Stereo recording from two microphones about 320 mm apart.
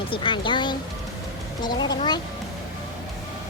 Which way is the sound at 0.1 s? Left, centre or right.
Centre.